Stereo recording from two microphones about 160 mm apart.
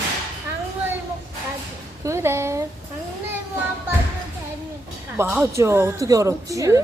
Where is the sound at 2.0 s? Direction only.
15° right (ahead or behind).